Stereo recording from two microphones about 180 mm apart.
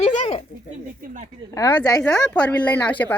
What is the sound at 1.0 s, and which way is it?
Speech, 45° right (ahead or behind).